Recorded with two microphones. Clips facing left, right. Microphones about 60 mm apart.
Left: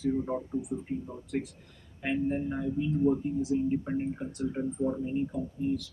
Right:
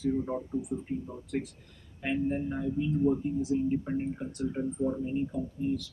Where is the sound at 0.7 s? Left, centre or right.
Left.